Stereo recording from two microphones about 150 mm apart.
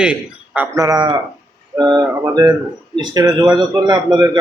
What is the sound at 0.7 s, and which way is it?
A man's voice, 25° right (ahead or behind).